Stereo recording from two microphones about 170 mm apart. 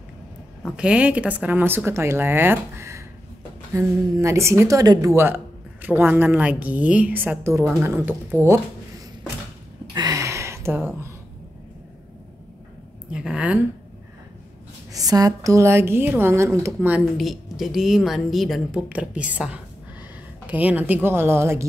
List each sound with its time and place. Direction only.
0.7 s speech: 5° right (ahead or behind)
9.9 s a sound: 20° right (ahead or behind)
13.1 s speech: 5° right (ahead or behind)
14.9 s speech: 20° right (ahead or behind)